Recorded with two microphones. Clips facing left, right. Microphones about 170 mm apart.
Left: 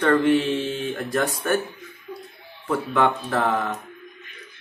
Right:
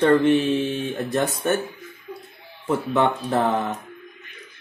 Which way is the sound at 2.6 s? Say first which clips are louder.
Right 1 dB; 25° right (ahead or behind).